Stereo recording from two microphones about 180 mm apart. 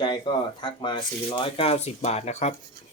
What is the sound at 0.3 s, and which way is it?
Speech, 25° left (ahead or behind).